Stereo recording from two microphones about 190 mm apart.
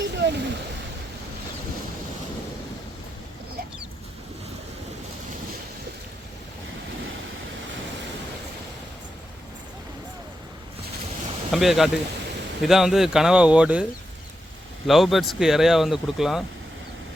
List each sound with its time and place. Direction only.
0.0 s a sound: 65° right (ahead or behind)
11.5 s speech: centre (ahead or behind)
14.8 s speech: centre (ahead or behind)